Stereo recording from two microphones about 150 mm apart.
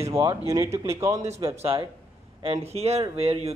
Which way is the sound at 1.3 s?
40° right (ahead or behind).